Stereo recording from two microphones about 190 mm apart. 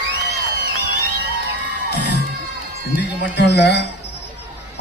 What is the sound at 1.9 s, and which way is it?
Crowd, 65° left (ahead or behind).